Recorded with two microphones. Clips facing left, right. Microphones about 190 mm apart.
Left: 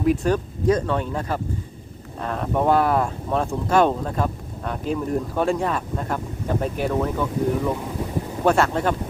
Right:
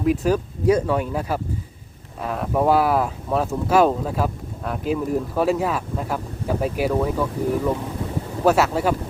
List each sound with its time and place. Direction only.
0.0 s speech: centre (ahead or behind)